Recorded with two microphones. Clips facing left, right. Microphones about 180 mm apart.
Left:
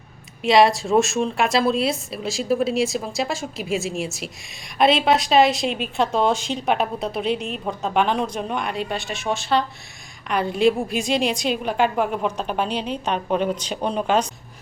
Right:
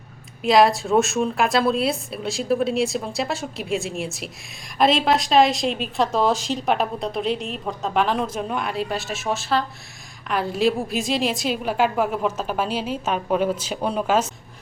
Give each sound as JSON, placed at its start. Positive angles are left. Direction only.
{"t": 0.4, "sound": "a woman's voice", "side_deg": 0}